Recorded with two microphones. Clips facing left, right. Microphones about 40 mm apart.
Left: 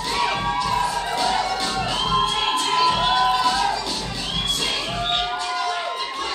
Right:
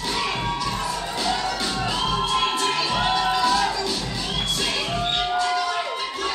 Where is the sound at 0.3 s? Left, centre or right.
Left.